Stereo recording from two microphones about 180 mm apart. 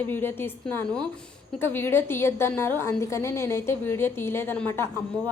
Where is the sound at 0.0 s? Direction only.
10° left (ahead or behind).